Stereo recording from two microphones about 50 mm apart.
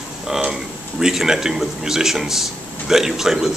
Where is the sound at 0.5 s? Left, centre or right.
Centre.